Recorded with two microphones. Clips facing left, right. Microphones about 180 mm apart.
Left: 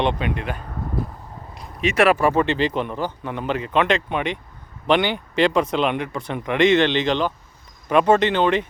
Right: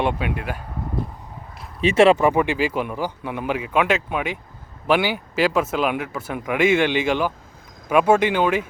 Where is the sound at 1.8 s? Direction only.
30° right (ahead or behind).